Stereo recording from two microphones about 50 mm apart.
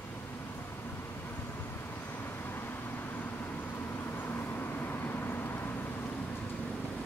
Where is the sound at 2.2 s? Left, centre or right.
Left.